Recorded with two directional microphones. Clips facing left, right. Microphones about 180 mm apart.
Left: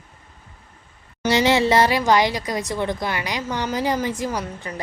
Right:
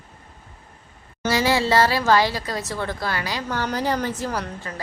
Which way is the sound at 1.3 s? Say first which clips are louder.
Left 2 dB; 20° left (ahead or behind).